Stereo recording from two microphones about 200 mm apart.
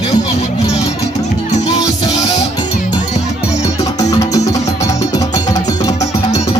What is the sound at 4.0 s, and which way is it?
Music, 15° left (ahead or behind).